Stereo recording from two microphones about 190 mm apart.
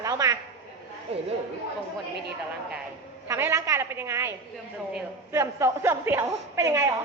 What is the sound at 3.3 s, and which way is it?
A woman's voice, 15° right (ahead or behind).